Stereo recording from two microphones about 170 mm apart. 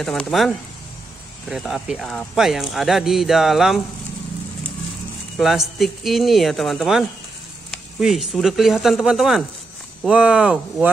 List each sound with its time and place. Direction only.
0.0 s speech: centre (ahead or behind)
5.4 s speech: centre (ahead or behind)